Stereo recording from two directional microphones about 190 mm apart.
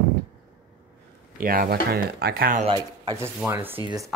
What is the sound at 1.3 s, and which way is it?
Speech, 50° right (ahead or behind).